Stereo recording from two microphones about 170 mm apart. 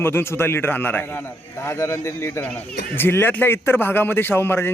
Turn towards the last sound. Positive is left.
turn(degrees=15)  # may be behind; listen again after turning